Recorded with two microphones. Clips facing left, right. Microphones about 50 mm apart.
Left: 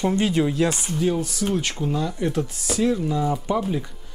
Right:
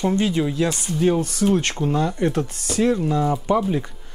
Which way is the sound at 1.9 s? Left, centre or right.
Right.